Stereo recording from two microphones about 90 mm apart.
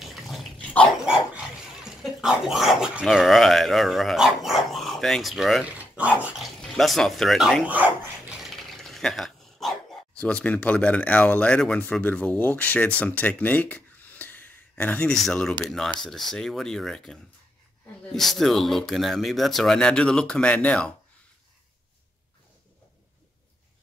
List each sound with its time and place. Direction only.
0.0 s dog: centre (ahead or behind)
5.8 s dog: 15° right (ahead or behind)
6.3 s speech: centre (ahead or behind)
7.6 s speech: 15° right (ahead or behind)
8.4 s dog: 5° left (ahead or behind)
10.1 s speech: 15° left (ahead or behind)
15.0 s speech: 5° left (ahead or behind)